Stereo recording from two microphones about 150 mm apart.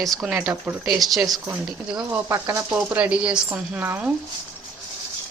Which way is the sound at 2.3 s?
20° right (ahead or behind).